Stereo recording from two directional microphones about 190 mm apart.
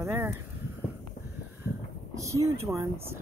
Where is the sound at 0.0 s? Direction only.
15° right (ahead or behind).